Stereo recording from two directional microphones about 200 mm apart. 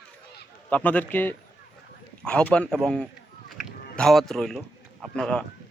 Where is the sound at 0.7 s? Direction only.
5° left (ahead or behind).